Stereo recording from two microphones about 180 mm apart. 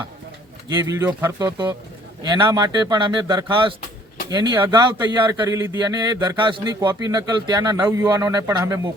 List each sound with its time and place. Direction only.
0.8 s speech: 20° right (ahead or behind)